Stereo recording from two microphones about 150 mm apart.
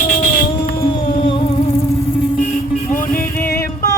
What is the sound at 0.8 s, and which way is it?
Music, 30° left (ahead or behind).